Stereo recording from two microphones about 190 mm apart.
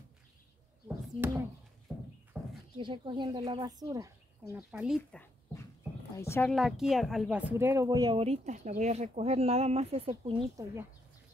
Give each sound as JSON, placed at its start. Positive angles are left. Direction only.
{"t": 0.8, "sound": "a sound", "side_deg": -10}
{"t": 1.9, "sound": "horse", "side_deg": -10}
{"t": 2.3, "sound": "a sound", "side_deg": -5}
{"t": 2.8, "sound": "speech", "side_deg": -25}
{"t": 4.6, "sound": "speech", "side_deg": -5}
{"t": 6.1, "sound": "speech", "side_deg": 15}
{"t": 6.5, "sound": "speech", "side_deg": 0}